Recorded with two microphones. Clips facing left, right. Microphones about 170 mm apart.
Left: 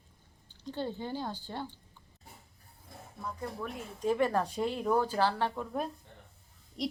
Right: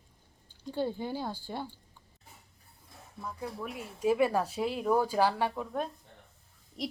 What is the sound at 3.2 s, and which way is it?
A woman's voice, 5° right (ahead or behind).